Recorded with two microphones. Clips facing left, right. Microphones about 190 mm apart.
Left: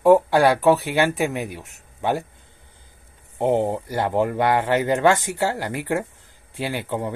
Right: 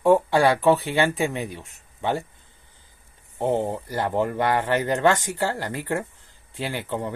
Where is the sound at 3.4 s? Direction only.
15° left (ahead or behind).